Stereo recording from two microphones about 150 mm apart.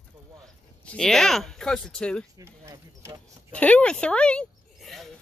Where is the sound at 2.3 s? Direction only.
20° right (ahead or behind).